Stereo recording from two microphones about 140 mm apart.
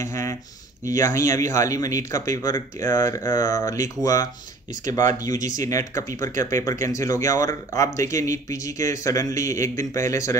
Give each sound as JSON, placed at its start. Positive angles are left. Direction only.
{"t": 0.0, "sound": "speech", "side_deg": 20}